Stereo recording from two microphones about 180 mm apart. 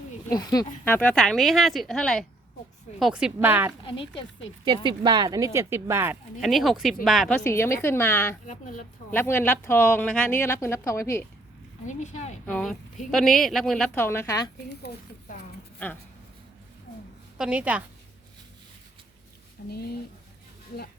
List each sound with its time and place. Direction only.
0.3 s speech: 20° left (ahead or behind)
0.9 s a woman's voice: 10° left (ahead or behind); by 3.7 s 10° right (ahead or behind)
3.8 s speech: 30° left (ahead or behind)
4.6 s speech: 30° right (ahead or behind)
6.4 s a woman's voice: centre (ahead or behind)
7.4 s speech: 15° left (ahead or behind)
8.4 s a woman's voice: 45° left (ahead or behind)
9.1 s speech: 10° left (ahead or behind)
11.9 s speech: 40° left (ahead or behind)
12.5 s a woman's voice: 5° left (ahead or behind)
14.7 s speech: 65° left (ahead or behind)
17.3 s speech: 5° right (ahead or behind)
19.7 s speech: 60° left (ahead or behind)